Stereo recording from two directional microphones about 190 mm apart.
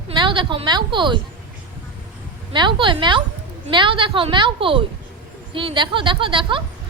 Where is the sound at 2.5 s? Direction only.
25° right (ahead or behind).